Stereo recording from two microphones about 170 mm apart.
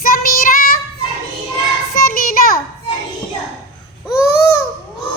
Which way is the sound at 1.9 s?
55° left (ahead or behind).